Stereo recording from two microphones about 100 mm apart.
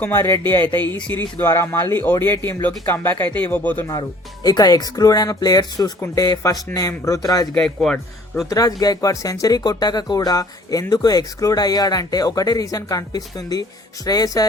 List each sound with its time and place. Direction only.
0.0 s speech: 25° left (ahead or behind)
0.9 s a man's voice: 10° left (ahead or behind)
1.4 s speech: 25° left (ahead or behind)
4.4 s speech: 40° left (ahead or behind)
7.5 s a man's voice: 5° left (ahead or behind)
8.4 s speech: 35° left (ahead or behind)